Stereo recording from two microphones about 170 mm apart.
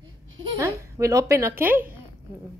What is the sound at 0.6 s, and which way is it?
A woman's voice, 15° right (ahead or behind).